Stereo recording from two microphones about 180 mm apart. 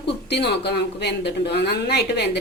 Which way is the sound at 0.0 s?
70° left (ahead or behind).